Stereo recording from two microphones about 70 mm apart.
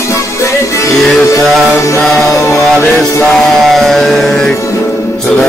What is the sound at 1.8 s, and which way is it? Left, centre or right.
Mantra, left.